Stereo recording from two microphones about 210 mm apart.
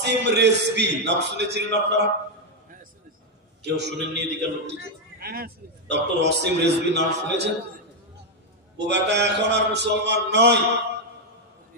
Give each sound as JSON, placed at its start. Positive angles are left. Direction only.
{"t": 0.0, "sound": "a man's voice", "side_deg": -55}
{"t": 3.6, "sound": "a man's voice", "side_deg": -55}
{"t": 8.9, "sound": "a man's voice", "side_deg": -55}